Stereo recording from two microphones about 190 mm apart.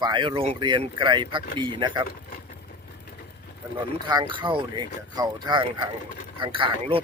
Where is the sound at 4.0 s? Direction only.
25° right (ahead or behind).